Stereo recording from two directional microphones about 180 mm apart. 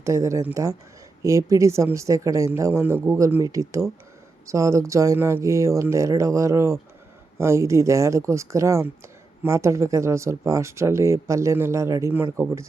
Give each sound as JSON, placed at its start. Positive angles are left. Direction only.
{"t": 0.0, "sound": "speech", "side_deg": -15}